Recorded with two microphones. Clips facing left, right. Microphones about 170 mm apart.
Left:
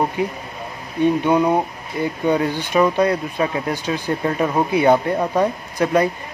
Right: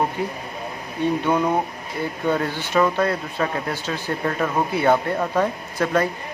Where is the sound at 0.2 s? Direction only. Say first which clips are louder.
Left 3 dB; 15° left (ahead or behind).